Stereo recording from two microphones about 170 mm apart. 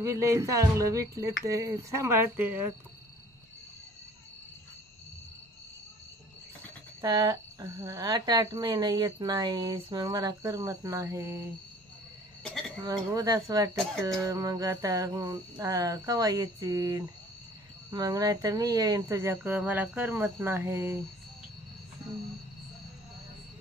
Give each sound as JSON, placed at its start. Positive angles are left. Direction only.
{"t": 0.0, "sound": "speech", "side_deg": -15}
{"t": 7.0, "sound": "speech", "side_deg": -25}
{"t": 12.4, "sound": "a sound", "side_deg": 5}
{"t": 12.8, "sound": "speech", "side_deg": -20}